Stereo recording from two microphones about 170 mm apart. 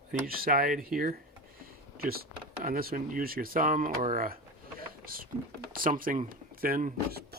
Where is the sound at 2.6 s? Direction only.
55° right (ahead or behind).